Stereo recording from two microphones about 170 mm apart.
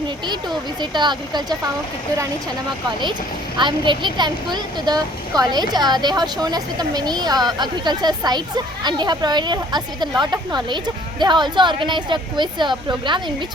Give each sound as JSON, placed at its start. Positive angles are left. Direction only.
{"t": 0.8, "sound": "speech", "side_deg": -25}
{"t": 3.6, "sound": "speech", "side_deg": -25}